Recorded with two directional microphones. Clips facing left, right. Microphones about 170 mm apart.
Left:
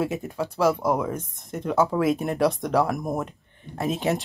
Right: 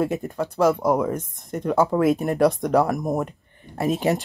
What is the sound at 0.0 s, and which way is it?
Speech, centre (ahead or behind).